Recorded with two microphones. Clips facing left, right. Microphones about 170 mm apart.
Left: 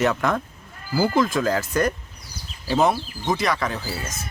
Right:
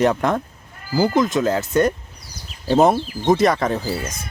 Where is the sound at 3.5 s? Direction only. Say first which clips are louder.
Right 5 dB; 45° right (ahead or behind).